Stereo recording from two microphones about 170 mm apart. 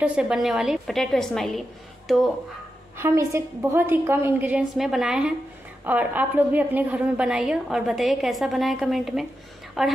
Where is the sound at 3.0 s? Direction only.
15° right (ahead or behind).